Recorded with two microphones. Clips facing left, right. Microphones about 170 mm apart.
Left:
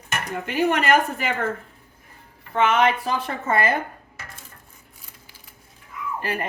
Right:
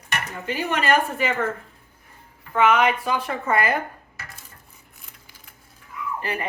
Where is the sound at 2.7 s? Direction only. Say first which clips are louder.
Left 1 dB; 25° left (ahead or behind).